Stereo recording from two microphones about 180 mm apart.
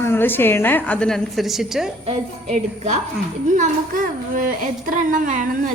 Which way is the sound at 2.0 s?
35° right (ahead or behind).